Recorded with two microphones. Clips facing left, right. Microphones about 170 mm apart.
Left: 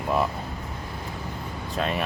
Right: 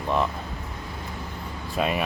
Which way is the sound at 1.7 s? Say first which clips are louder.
Right 2 dB; 10° right (ahead or behind).